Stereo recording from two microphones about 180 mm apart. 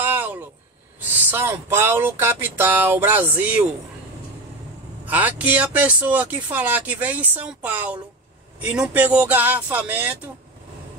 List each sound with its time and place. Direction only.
0.0 s a sound: 10° right (ahead or behind)
1.2 s speech: 10° right (ahead or behind)
5.0 s speech: 10° right (ahead or behind)